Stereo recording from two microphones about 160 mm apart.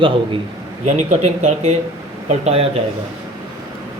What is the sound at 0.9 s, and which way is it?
Speech, 45° right (ahead or behind).